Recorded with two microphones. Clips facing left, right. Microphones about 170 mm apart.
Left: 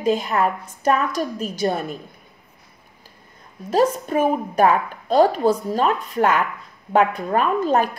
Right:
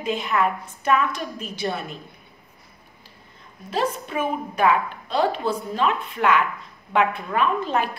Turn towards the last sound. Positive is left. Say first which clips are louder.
# left 4 dB
turn(degrees=40)  # may be behind; listen again after turning